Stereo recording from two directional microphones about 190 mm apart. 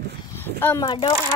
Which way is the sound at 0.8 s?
25° left (ahead or behind).